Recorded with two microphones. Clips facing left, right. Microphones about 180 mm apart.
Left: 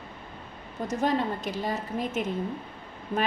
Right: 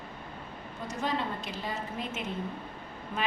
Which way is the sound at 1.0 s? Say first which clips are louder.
Left 6 dB; 40° left (ahead or behind).